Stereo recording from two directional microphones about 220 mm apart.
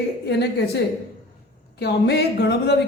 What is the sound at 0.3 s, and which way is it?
A man's voice, 50° left (ahead or behind).